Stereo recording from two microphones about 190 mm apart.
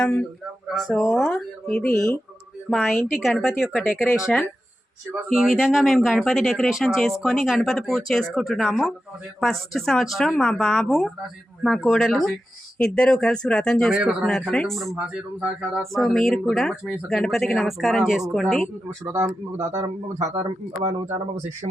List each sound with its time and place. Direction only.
0.0 s speech: 5° left (ahead or behind)
13.9 s speech: 5° right (ahead or behind)
19.0 s speech: 15° right (ahead or behind)
20.1 s speech: 35° right (ahead or behind)